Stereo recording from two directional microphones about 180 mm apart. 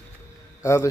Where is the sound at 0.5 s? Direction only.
15° left (ahead or behind).